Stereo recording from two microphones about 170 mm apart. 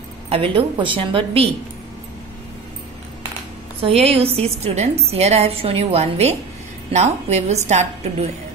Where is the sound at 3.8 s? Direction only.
35° right (ahead or behind).